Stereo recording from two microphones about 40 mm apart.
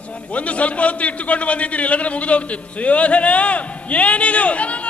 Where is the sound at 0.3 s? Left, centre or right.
Left.